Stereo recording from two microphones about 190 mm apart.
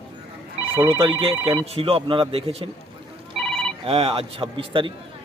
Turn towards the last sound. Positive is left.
turn(degrees=-25)  # may be behind; listen again after turning